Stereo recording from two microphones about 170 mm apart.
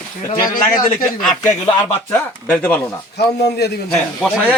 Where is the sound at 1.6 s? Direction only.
15° left (ahead or behind).